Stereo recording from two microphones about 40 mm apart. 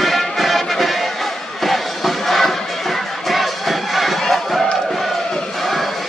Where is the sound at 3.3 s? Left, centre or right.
Centre.